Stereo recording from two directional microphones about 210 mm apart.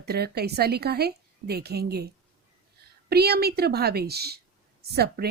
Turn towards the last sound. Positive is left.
turn(degrees=-50)  # may be behind; listen again after turning